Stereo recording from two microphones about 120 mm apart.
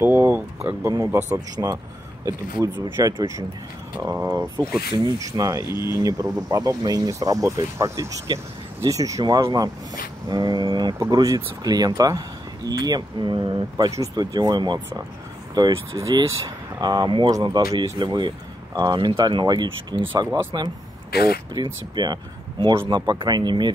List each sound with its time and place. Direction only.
0.0 s speech: 20° right (ahead or behind)
2.8 s speech: 30° right (ahead or behind)
4.9 s speech: 35° right (ahead or behind)
21.9 s speech: 35° right (ahead or behind)